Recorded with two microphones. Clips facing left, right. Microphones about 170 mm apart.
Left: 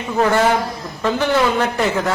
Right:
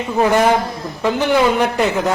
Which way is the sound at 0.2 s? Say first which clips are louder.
Right 2 dB; 15° right (ahead or behind).